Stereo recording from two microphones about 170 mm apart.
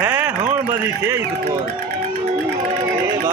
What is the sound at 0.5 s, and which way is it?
Speech, 10° right (ahead or behind).